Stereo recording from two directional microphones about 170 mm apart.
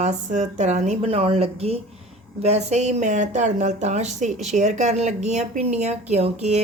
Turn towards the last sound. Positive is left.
turn(degrees=-40)  # may be behind; listen again after turning